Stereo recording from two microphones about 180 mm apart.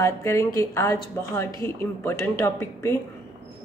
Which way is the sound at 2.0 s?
15° left (ahead or behind).